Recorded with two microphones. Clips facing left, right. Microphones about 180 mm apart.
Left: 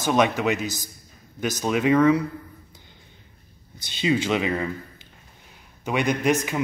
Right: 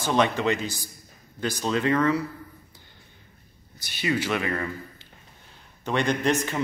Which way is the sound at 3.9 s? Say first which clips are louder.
Left 4 dB; 20° left (ahead or behind).